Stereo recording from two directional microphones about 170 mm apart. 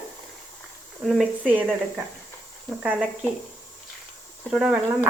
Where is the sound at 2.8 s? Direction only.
10° right (ahead or behind).